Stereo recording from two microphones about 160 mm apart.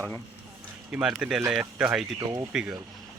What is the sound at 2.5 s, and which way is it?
Speech, 5° right (ahead or behind).